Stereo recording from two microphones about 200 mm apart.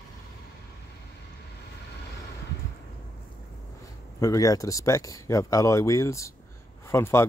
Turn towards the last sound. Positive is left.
turn(degrees=15)  # may be behind; listen again after turning